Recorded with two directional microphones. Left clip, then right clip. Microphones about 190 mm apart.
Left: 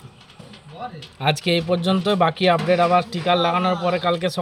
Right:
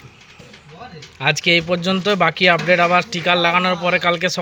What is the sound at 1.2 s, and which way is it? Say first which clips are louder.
A man's voice: right 5 dB; 5° left (ahead or behind).